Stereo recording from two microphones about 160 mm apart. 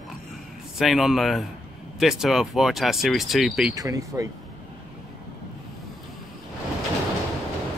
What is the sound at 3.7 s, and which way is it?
Speech, 20° right (ahead or behind).